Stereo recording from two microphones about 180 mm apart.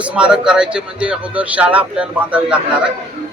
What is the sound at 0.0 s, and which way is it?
A man's voice, 5° right (ahead or behind).